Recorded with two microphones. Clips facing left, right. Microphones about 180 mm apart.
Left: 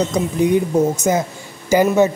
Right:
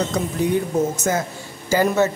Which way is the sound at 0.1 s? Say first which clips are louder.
Left 4 dB; 15° left (ahead or behind).